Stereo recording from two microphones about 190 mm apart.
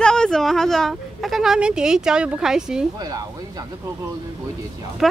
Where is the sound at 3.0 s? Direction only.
20° right (ahead or behind).